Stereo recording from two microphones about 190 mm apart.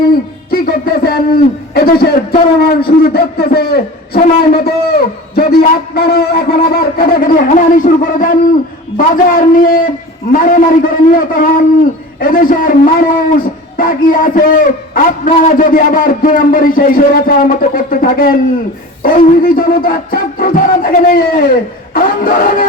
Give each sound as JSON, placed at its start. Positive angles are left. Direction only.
{"t": 0.5, "sound": "music", "side_deg": 50}
{"t": 1.7, "sound": "a man's voice", "side_deg": 55}